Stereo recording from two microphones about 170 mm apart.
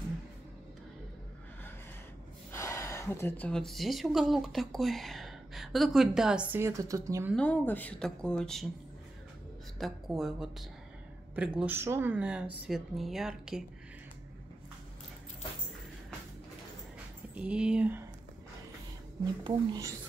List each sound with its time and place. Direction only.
2.5 s a woman's voice: 15° left (ahead or behind); by 7.2 s 20° right (ahead or behind)
7.3 s speech: 10° left (ahead or behind)
9.8 s speech: centre (ahead or behind)
17.4 s speech: 5° right (ahead or behind)
19.4 s speech: 20° right (ahead or behind)